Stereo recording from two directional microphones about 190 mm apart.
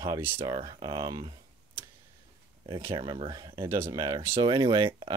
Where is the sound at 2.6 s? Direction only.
25° right (ahead or behind).